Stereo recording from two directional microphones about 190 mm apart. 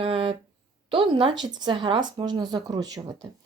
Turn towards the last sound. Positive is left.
turn(degrees=-20)  # may be behind; listen again after turning